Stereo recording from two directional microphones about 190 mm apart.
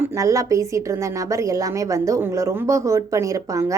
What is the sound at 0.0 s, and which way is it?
A woman's voice, 15° right (ahead or behind).